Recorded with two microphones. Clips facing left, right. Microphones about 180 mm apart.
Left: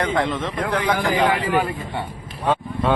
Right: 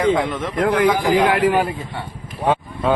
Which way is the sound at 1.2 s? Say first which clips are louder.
Right 4 dB; 80° right.